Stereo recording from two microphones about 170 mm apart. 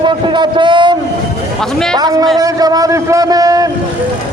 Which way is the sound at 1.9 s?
25° right (ahead or behind).